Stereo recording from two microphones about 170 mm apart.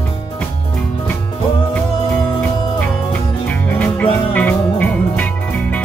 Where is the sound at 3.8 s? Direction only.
10° left (ahead or behind).